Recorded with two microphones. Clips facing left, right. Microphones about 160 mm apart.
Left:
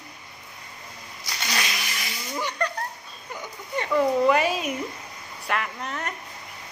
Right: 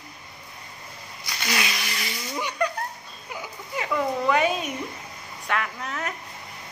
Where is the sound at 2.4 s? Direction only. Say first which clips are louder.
Right 1 dB; 10° right (ahead or behind).